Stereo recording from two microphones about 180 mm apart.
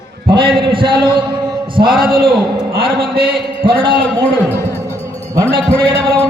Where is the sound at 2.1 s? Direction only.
30° right (ahead or behind).